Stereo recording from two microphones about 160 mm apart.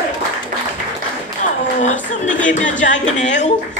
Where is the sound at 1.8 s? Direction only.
50° left (ahead or behind).